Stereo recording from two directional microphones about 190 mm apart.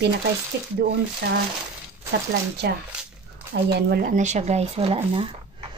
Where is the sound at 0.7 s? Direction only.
60° right (ahead or behind).